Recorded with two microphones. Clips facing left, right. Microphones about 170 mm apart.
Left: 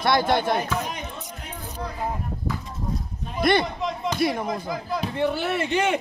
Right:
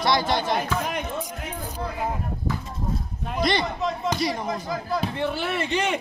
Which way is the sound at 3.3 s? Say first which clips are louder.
Left 3 dB; 55° left (ahead or behind).